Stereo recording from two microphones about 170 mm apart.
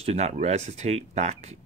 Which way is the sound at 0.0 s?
40° right (ahead or behind).